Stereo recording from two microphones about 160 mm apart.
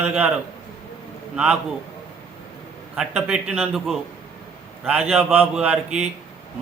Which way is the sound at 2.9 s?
5° right (ahead or behind).